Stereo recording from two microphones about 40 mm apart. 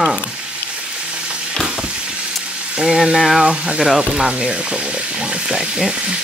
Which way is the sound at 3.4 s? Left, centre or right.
Right.